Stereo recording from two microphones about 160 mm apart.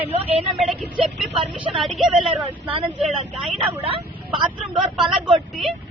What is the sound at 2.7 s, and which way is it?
Speech, 35° right (ahead or behind).